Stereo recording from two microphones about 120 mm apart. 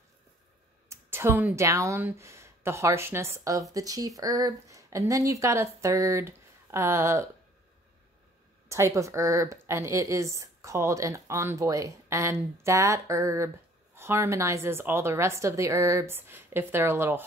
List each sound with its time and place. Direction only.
0.8 s a woman's voice: 20° right (ahead or behind)
8.6 s a woman's voice: 25° right (ahead or behind)